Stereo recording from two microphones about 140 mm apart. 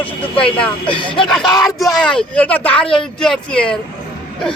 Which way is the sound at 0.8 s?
40° left (ahead or behind).